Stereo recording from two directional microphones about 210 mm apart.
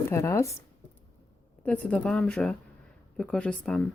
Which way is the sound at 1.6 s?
5° left (ahead or behind).